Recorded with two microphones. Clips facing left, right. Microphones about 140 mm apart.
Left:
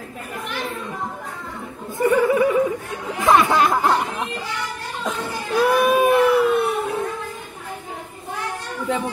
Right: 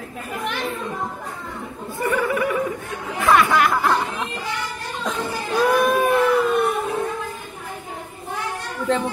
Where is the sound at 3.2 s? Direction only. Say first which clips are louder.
Left 1 dB; 20° left (ahead or behind).